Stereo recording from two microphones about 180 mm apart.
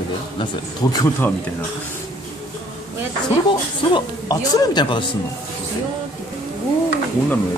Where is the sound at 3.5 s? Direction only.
25° left (ahead or behind).